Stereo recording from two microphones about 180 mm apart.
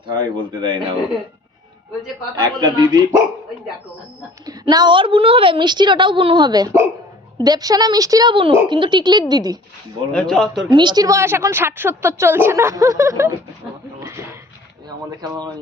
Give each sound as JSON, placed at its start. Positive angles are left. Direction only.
{"t": 0.1, "sound": "a woman's voice", "side_deg": -25}
{"t": 2.3, "sound": "a woman's voice", "side_deg": -25}
{"t": 2.8, "sound": "speech", "side_deg": -10}
{"t": 4.4, "sound": "a woman's voice", "side_deg": -20}
{"t": 10.1, "sound": "speech", "side_deg": 5}
{"t": 10.7, "sound": "speech", "side_deg": -25}
{"t": 14.0, "sound": "a sound", "side_deg": -15}
{"t": 14.8, "sound": "speech", "side_deg": -20}